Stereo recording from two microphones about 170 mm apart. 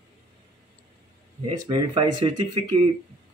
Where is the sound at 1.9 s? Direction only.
30° right (ahead or behind).